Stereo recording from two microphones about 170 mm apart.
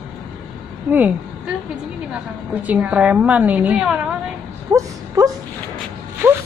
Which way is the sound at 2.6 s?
10° right (ahead or behind).